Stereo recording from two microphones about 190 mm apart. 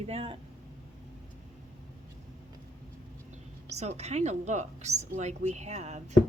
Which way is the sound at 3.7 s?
35° right (ahead or behind).